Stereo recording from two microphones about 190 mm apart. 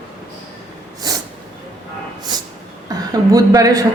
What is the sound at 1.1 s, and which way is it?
Snort, 20° right (ahead or behind).